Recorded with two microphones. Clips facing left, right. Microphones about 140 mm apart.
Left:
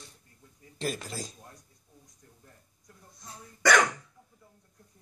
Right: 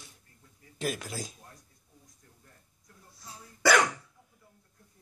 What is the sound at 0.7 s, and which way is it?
Speech, 5° right (ahead or behind).